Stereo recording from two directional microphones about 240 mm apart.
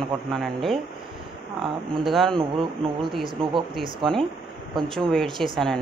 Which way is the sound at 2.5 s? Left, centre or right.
Centre.